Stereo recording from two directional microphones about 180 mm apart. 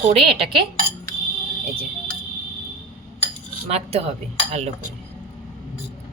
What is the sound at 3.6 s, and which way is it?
Speech, 35° right (ahead or behind).